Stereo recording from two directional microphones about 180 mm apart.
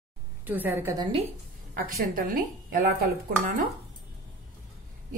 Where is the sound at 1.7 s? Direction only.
50° right (ahead or behind).